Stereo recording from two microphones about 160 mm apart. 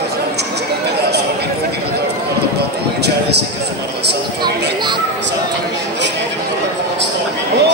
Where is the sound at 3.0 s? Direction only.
90° right.